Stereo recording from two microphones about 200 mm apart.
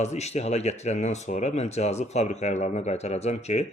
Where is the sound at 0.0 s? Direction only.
35° left (ahead or behind).